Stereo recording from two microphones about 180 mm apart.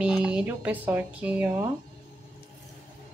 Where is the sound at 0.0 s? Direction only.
5° right (ahead or behind).